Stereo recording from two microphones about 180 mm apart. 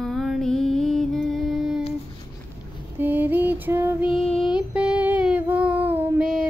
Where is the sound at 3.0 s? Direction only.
10° right (ahead or behind).